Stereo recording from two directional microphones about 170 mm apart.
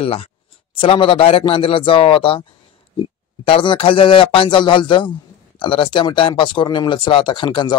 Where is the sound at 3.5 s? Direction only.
30° left (ahead or behind).